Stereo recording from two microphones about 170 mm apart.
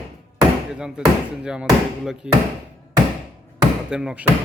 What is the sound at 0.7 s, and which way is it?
A man's voice, 5° right (ahead or behind).